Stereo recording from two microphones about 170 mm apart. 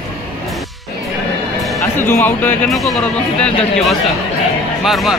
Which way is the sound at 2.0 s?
10° left (ahead or behind).